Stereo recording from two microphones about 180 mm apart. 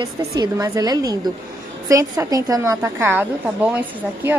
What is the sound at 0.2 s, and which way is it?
A woman's voice, 20° right (ahead or behind).